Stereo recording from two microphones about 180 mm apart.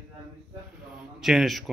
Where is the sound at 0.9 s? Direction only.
Centre (ahead or behind).